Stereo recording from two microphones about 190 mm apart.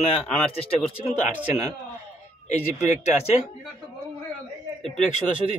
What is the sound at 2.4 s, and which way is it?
Speech, 40° left (ahead or behind).